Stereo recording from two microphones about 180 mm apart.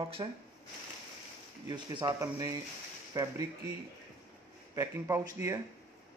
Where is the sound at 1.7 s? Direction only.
20° right (ahead or behind).